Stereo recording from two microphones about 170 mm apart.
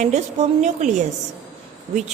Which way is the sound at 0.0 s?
40° right (ahead or behind).